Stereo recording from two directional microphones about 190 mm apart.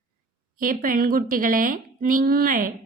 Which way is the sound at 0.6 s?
45° right (ahead or behind).